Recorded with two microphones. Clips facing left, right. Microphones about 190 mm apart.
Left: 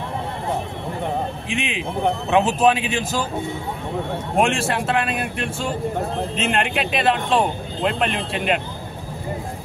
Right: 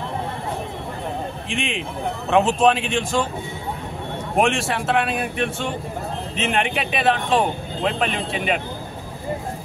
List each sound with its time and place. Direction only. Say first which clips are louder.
1.5 s speech: even; centre (ahead or behind)
4.4 s speech: even; centre (ahead or behind)